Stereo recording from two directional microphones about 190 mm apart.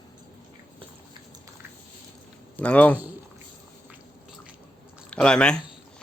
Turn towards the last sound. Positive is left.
turn(degrees=5)  # may be behind; listen again after turning